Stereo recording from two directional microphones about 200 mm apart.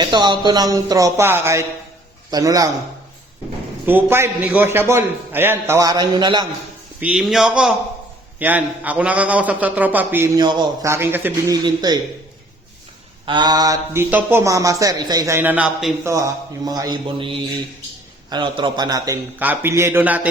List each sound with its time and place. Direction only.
0.0 s a man's voice: 20° right (ahead or behind)
3.8 s a man's voice: 10° right (ahead or behind)
7.0 s a man's voice: 5° right (ahead or behind)
11.6 s a man's voice: 20° right (ahead or behind)
13.2 s a man's voice: 20° right (ahead or behind); by 16.1 s 5° right (ahead or behind)
16.1 s a man's voice: 20° right (ahead or behind)